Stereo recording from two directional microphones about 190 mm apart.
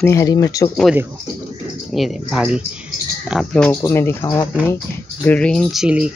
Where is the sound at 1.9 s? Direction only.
Centre (ahead or behind).